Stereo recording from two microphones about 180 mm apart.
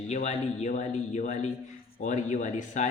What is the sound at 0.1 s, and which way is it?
Speech, 40° left (ahead or behind).